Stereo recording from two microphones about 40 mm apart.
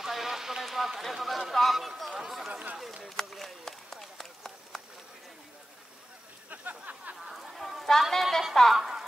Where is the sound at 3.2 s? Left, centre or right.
Centre.